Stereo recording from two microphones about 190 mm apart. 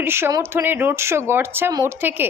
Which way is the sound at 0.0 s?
15° right (ahead or behind).